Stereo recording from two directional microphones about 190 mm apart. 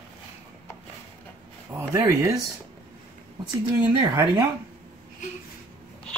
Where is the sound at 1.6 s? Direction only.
15° right (ahead or behind).